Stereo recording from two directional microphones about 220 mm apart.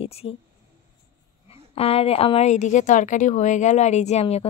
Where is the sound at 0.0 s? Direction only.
25° left (ahead or behind).